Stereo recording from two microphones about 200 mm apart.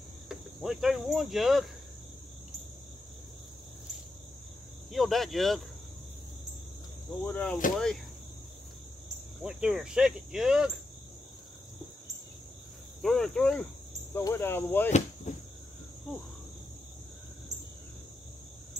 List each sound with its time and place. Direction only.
0.3 s cricket: 5° right (ahead or behind)
4.9 s cricket: centre (ahead or behind)
7.2 s speech: 5° left (ahead or behind)
7.7 s cricket: centre (ahead or behind)
9.4 s cricket: 5° right (ahead or behind)
13.0 s cricket: 5° left (ahead or behind)
14.1 s speech: 10° left (ahead or behind)
14.9 s cricket: 35° left (ahead or behind)